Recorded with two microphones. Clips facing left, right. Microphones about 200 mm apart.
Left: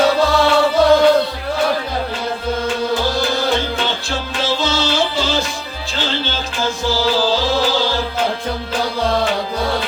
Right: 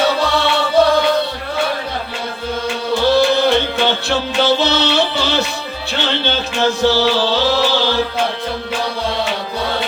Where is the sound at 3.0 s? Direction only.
65° right (ahead or behind).